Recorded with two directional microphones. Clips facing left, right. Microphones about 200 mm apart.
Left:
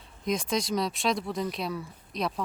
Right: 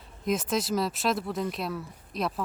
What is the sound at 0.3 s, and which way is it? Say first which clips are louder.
Speech: right 1 dB; 5° right (ahead or behind).